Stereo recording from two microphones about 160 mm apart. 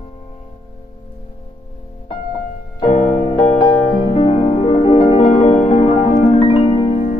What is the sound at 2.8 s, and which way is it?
Music, 40° left (ahead or behind).